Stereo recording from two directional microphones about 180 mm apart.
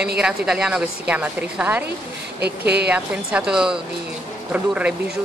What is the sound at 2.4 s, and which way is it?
Speech, 65° right (ahead or behind).